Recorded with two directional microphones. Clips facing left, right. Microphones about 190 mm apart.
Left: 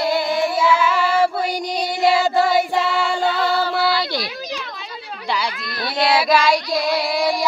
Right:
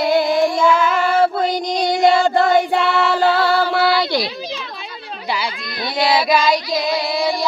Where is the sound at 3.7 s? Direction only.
70° right (ahead or behind).